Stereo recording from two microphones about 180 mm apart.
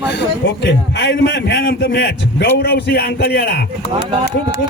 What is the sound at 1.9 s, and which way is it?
A man's voice, 75° left (ahead or behind).